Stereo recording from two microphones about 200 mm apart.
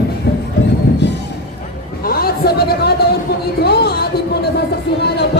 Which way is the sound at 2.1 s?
50° left (ahead or behind).